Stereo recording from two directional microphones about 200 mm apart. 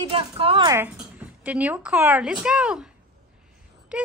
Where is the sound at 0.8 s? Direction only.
5° right (ahead or behind).